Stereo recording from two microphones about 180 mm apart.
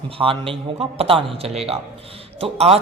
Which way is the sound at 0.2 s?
30° right (ahead or behind).